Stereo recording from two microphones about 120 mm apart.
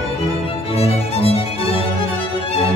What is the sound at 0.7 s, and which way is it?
Music, 55° left (ahead or behind).